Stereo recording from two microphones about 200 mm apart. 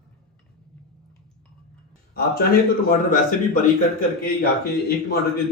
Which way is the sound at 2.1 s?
45° left (ahead or behind).